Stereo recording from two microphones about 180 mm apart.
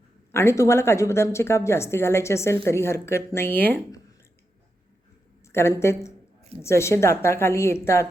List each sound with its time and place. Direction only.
0.3 s a woman's voice: 15° left (ahead or behind)
5.5 s a woman's voice: 15° left (ahead or behind)